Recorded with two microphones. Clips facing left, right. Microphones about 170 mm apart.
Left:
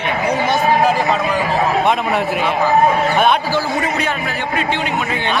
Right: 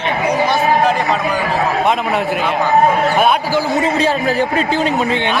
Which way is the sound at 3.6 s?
20° right (ahead or behind).